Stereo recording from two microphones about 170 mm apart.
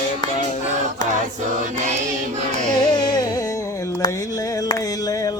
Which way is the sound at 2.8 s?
25° left (ahead or behind).